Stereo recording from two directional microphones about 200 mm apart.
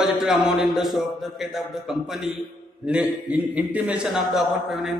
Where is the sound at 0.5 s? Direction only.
Centre (ahead or behind).